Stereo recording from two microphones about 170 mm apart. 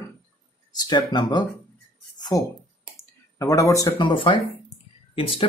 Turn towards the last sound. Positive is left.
turn(degrees=35)  # may be behind; listen again after turning